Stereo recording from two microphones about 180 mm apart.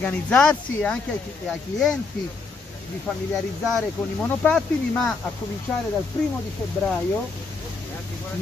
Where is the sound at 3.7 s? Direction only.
5° left (ahead or behind).